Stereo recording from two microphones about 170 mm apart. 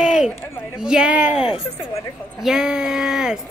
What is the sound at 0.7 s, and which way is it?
Speech, 5° right (ahead or behind).